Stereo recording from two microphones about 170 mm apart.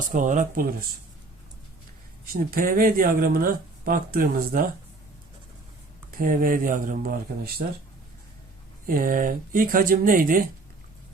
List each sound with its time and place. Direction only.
0.1 s speech: 50° right (ahead or behind)
2.2 s speech: 60° right (ahead or behind)
6.1 s speech: 55° right (ahead or behind)
8.9 s speech: 55° right (ahead or behind)